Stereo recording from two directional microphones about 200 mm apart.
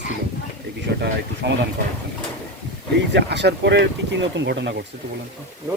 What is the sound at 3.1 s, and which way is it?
Speech, 60° right (ahead or behind).